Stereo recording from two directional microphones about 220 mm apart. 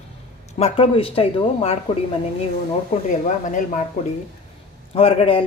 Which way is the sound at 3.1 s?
35° left (ahead or behind).